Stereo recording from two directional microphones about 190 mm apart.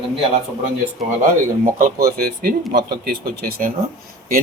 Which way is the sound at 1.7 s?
50° right (ahead or behind).